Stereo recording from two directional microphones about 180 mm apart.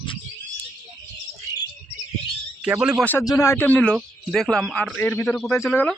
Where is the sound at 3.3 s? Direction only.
15° left (ahead or behind).